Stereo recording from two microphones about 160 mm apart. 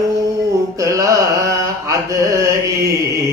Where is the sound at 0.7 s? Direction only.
20° right (ahead or behind).